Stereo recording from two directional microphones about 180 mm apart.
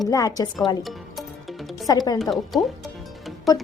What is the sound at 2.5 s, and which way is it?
Speech, centre (ahead or behind).